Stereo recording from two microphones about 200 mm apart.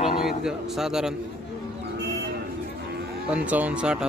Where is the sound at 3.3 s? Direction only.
5° right (ahead or behind).